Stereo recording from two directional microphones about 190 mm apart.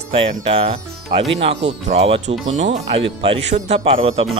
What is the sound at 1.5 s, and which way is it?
Speech, 35° right (ahead or behind).